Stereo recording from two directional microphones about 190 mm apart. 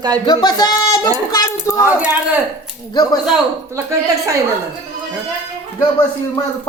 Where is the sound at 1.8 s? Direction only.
10° right (ahead or behind).